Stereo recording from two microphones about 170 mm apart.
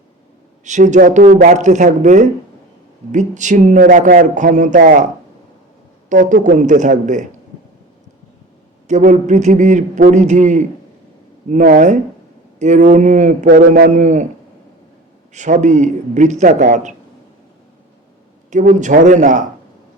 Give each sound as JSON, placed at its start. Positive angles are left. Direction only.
{"t": 0.6, "sound": "a man's voice", "side_deg": -45}
{"t": 6.1, "sound": "a man's voice", "side_deg": -50}
{"t": 8.9, "sound": "a man's voice", "side_deg": -45}
{"t": 15.3, "sound": "a man's voice", "side_deg": -45}
{"t": 18.5, "sound": "a man's voice", "side_deg": -45}